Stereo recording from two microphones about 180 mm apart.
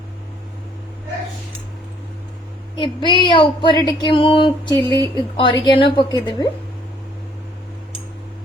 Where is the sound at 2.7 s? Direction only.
25° left (ahead or behind).